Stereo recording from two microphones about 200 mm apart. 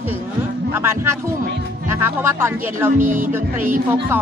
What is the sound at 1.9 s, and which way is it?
Speech, 10° right (ahead or behind).